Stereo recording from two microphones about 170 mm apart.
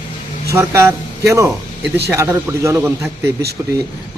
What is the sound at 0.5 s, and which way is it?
A man's voice, 15° right (ahead or behind).